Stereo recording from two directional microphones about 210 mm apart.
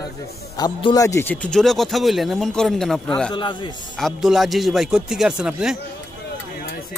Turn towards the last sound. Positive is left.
turn(degrees=-5)  # may be behind; listen again after turning